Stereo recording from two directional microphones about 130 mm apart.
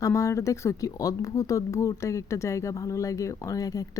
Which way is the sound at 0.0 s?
25° left (ahead or behind).